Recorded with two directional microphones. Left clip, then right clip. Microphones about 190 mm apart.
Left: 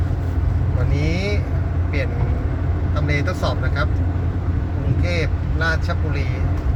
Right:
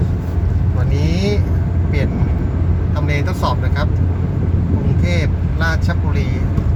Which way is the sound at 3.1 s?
15° right (ahead or behind).